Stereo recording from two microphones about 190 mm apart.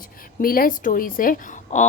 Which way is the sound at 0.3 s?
50° left (ahead or behind).